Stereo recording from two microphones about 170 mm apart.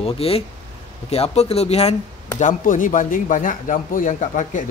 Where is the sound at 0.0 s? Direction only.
35° left (ahead or behind).